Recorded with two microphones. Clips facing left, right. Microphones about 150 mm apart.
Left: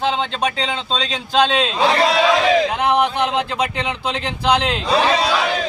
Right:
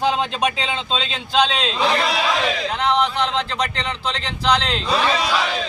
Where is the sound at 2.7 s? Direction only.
10° left (ahead or behind).